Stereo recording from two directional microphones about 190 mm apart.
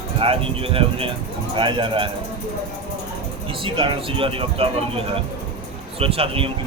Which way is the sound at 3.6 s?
25° right (ahead or behind).